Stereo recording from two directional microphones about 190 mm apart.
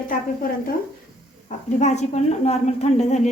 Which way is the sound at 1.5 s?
35° left (ahead or behind).